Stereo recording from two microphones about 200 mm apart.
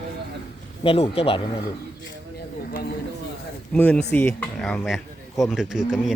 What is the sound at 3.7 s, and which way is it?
Speech, 10° left (ahead or behind).